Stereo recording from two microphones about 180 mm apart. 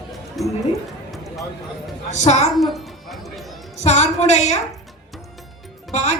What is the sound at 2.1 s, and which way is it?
Speech, 40° left (ahead or behind).